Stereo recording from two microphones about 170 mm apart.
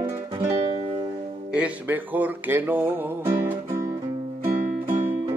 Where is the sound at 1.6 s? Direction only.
10° right (ahead or behind).